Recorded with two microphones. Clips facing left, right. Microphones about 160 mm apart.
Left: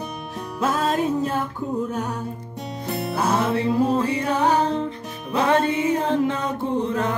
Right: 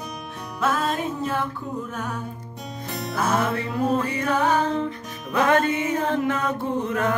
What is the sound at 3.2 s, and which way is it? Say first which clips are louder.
Music: left 1 dB; 30° left (ahead or behind).